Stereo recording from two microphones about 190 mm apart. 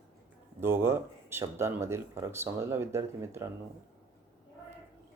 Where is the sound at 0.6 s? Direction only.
10° right (ahead or behind).